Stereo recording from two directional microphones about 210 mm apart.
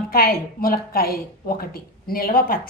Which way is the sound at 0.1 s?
45° left (ahead or behind).